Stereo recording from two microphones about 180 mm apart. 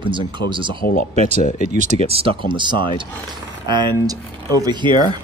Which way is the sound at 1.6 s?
45° right (ahead or behind).